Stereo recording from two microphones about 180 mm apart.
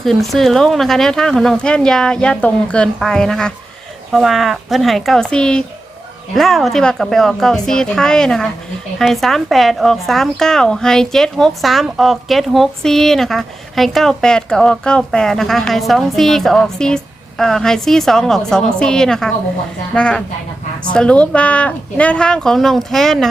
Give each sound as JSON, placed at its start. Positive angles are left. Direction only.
{"t": 0.0, "sound": "speech", "side_deg": 0}